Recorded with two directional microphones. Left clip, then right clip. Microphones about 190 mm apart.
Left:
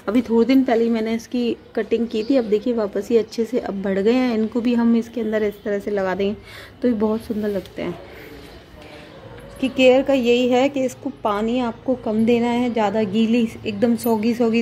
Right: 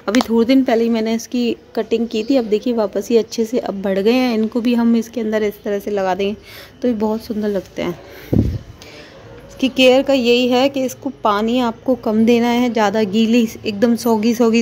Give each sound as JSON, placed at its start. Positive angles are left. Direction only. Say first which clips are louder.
{"t": 0.0, "sound": "a woman's voice", "louder": "right 3 dB", "side_deg": -10}
{"t": 7.4, "sound": "a woman's voice", "louder": "right 7 dB", "side_deg": -15}
{"t": 9.6, "sound": "a woman's voice", "louder": "right 3 dB", "side_deg": -15}